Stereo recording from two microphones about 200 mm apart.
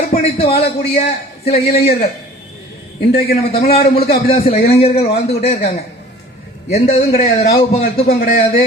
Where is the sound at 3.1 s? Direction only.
50° left (ahead or behind).